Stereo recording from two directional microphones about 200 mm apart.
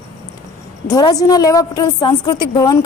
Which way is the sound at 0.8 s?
20° left (ahead or behind).